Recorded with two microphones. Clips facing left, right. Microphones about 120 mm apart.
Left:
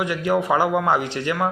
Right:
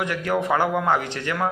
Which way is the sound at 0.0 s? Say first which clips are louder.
Left 3 dB; 10° left (ahead or behind).